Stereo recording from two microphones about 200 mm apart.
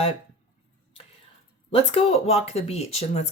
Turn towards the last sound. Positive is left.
turn(degrees=30)  # may be behind; listen again after turning